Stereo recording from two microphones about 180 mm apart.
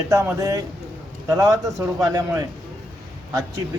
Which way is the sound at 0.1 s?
15° right (ahead or behind).